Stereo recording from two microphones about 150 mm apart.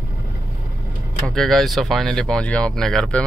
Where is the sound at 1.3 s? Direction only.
Centre (ahead or behind).